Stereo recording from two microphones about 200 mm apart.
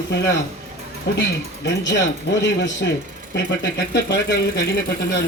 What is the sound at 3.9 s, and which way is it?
Speech, 60° left (ahead or behind).